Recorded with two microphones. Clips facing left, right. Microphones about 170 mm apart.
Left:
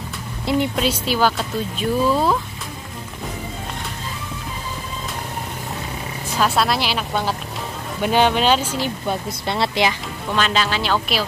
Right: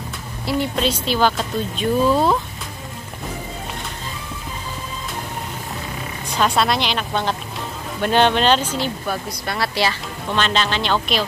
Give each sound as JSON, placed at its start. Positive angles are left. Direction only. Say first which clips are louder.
{"t": 0.7, "sound": "a woman's voice", "louder": "even", "side_deg": 10}
{"t": 6.3, "sound": "a woman's voice", "louder": "right 1 dB", "side_deg": 0}
{"t": 9.0, "sound": "speech", "louder": "left 2 dB", "side_deg": 25}
{"t": 10.3, "sound": "a woman's voice", "louder": "even", "side_deg": 5}